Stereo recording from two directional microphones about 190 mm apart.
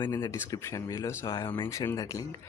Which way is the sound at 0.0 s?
20° left (ahead or behind).